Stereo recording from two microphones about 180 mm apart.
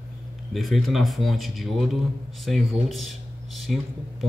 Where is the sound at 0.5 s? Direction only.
Centre (ahead or behind).